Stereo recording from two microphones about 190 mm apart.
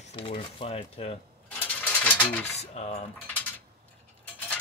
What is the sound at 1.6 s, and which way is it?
Bird, 10° left (ahead or behind).